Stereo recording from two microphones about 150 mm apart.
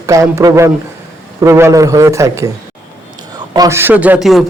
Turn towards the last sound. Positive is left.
turn(degrees=0)  # may be behind; listen again after turning